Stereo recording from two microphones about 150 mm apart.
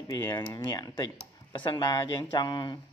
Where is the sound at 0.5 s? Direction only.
30° left (ahead or behind).